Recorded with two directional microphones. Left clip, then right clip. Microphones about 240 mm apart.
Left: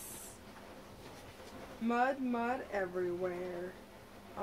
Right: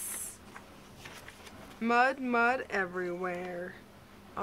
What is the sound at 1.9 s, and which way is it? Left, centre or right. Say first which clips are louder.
Speech: right 6 dB; right.